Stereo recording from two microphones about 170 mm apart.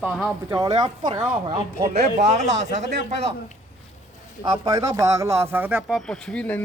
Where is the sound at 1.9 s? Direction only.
40° right (ahead or behind).